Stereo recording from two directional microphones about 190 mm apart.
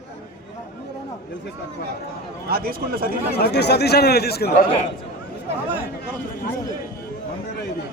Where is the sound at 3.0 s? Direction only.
55° left (ahead or behind).